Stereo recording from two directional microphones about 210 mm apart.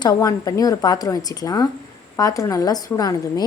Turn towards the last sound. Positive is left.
turn(degrees=15)  # may be behind; listen again after turning